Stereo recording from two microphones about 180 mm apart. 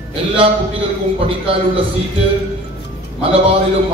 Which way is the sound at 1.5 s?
30° right (ahead or behind).